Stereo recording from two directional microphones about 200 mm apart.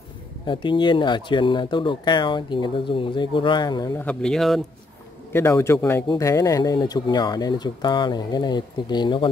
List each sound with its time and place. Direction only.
0.5 s speech: 25° left (ahead or behind)
4.0 s speech: 5° left (ahead or behind)
5.3 s a man's voice: 15° left (ahead or behind)